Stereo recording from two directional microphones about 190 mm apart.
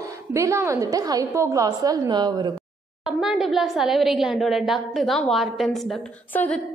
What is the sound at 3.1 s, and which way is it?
A woman's voice, 5° right (ahead or behind).